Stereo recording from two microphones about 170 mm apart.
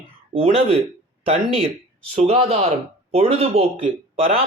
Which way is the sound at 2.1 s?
35° right (ahead or behind).